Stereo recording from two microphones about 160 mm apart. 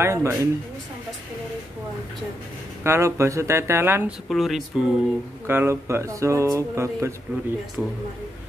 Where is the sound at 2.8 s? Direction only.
15° right (ahead or behind).